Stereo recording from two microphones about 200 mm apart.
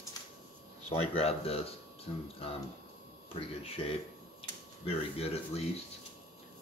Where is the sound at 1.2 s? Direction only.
30° left (ahead or behind).